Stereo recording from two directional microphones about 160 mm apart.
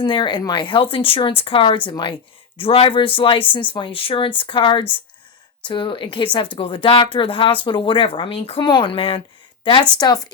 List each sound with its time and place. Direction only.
0.0 s a woman's voice: 30° left (ahead or behind)